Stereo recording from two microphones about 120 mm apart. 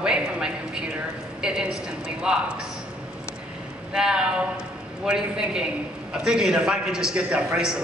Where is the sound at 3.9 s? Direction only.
5° right (ahead or behind).